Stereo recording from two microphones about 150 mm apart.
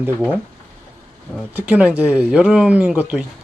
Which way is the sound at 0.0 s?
10° right (ahead or behind).